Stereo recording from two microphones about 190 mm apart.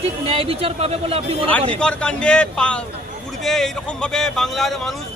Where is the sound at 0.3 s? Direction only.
30° right (ahead or behind).